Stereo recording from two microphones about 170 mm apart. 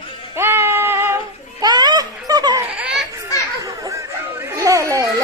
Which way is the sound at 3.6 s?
20° right (ahead or behind).